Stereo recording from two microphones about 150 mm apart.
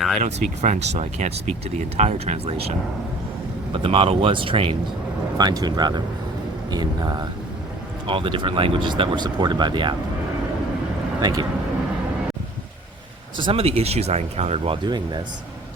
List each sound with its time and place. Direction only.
0.2 s speech: 50° right (ahead or behind)
5.4 s speech: 25° right (ahead or behind)
11.2 s speech: 25° right (ahead or behind)
13.3 s speech: 35° right (ahead or behind)